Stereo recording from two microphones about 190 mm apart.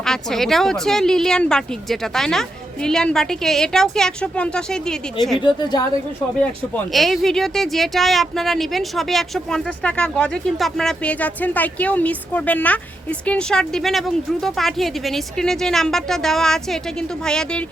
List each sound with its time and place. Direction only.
0.0 s speech: centre (ahead or behind)
5.4 s a woman's voice: 25° left (ahead or behind)
6.4 s speech: 5° left (ahead or behind)